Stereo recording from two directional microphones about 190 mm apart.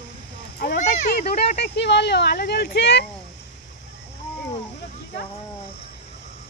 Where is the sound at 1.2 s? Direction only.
35° left (ahead or behind).